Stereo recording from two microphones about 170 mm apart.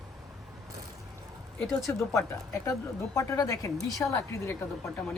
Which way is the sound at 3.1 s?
20° left (ahead or behind).